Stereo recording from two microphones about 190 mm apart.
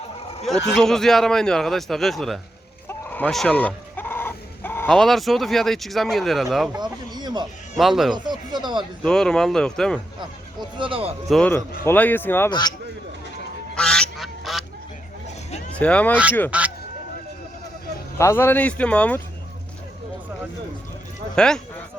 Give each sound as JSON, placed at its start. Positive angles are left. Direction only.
{"t": 0.8, "sound": "a man's voice", "side_deg": 0}
{"t": 6.7, "sound": "speech", "side_deg": -20}
{"t": 7.8, "sound": "a man's voice", "side_deg": 0}
{"t": 8.1, "sound": "speech", "side_deg": -25}
{"t": 9.0, "sound": "a man's voice", "side_deg": 5}
{"t": 10.8, "sound": "speech", "side_deg": -30}
{"t": 11.3, "sound": "a man's voice", "side_deg": 5}
{"t": 12.5, "sound": "speech", "side_deg": 20}
{"t": 13.7, "sound": "quack", "side_deg": 5}
{"t": 15.8, "sound": "speech", "side_deg": 5}
{"t": 16.5, "sound": "a man's voice", "side_deg": -5}
{"t": 18.2, "sound": "speech", "side_deg": 15}
{"t": 21.3, "sound": "a man's voice", "side_deg": 5}